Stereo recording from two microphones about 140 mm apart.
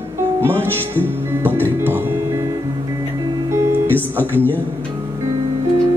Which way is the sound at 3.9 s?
15° left (ahead or behind).